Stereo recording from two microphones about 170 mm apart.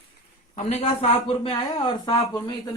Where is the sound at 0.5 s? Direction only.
40° left (ahead or behind).